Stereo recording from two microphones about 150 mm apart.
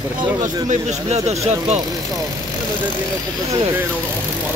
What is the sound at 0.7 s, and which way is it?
Speech, 45° right (ahead or behind).